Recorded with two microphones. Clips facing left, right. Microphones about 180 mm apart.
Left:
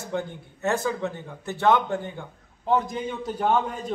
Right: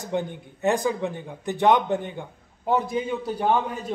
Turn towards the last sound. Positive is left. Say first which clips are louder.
# even
turn(degrees=-5)  # may be behind; listen again after turning